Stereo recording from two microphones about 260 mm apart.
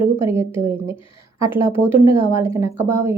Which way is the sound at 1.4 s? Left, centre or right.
Centre.